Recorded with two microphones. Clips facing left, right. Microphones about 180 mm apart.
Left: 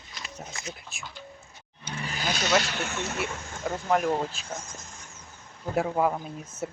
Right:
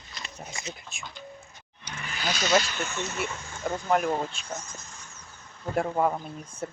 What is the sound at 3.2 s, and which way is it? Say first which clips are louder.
Speech: left 1 dB; centre (ahead or behind).